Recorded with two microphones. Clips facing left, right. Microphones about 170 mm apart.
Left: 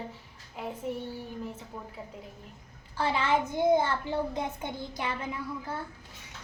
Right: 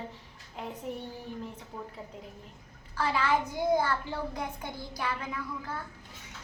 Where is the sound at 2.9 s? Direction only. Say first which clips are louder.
Left 1 dB; 25° left (ahead or behind).